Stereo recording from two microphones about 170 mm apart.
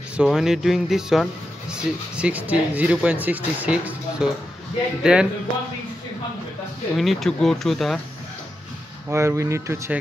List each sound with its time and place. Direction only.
0.2 s speech: 5° right (ahead or behind)
7.0 s speech: centre (ahead or behind)
9.1 s speech: 15° right (ahead or behind)